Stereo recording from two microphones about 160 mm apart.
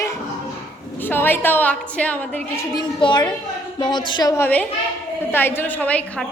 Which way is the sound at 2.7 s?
30° left (ahead or behind).